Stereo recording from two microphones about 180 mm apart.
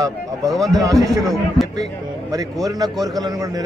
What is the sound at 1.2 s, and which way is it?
Speech, centre (ahead or behind).